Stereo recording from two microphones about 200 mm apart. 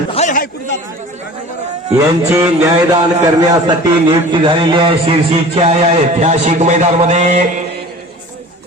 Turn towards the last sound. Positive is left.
turn(degrees=-35)  # may be behind; listen again after turning